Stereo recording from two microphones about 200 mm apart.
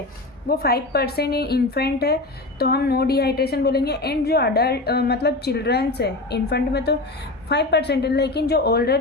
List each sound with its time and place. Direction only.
0.4 s a woman's voice: 50° left (ahead or behind)